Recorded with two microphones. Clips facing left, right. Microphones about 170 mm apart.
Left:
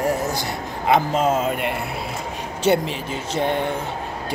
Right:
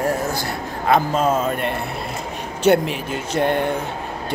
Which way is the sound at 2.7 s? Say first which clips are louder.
Right 3 dB; 5° right (ahead or behind).